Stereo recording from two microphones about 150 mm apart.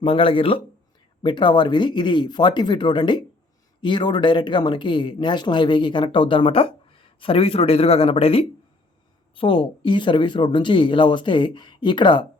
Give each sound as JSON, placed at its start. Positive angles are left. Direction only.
{"t": 0.0, "sound": "speech", "side_deg": 35}